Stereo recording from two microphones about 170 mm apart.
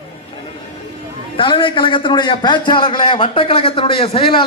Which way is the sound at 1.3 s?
30° left (ahead or behind).